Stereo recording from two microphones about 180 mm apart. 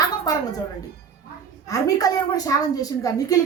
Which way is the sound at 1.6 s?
20° left (ahead or behind).